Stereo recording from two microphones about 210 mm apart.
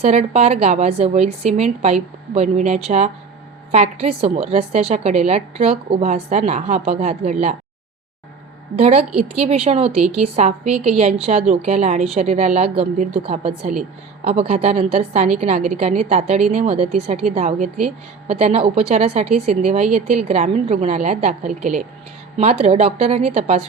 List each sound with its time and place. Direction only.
0.0 s a woman's voice: 30° right (ahead or behind)
8.8 s a woman's voice: 30° right (ahead or behind)